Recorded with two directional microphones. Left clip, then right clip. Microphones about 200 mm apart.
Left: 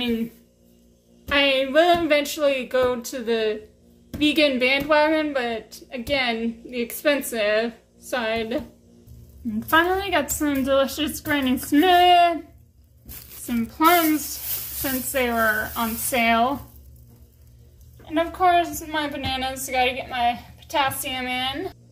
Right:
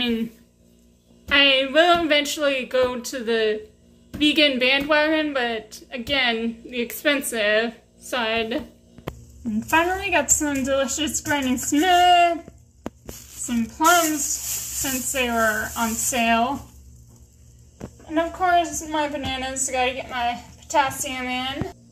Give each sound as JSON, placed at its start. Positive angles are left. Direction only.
{"t": 0.0, "sound": "a sound", "side_deg": 0}
{"t": 1.3, "sound": "a woman's voice", "side_deg": 10}
{"t": 13.5, "sound": "a woman's voice", "side_deg": 10}
{"t": 15.1, "sound": "a woman's voice", "side_deg": 10}
{"t": 18.1, "sound": "a woman's voice", "side_deg": 5}